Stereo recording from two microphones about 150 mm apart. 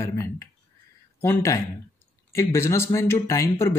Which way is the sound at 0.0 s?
20° left (ahead or behind).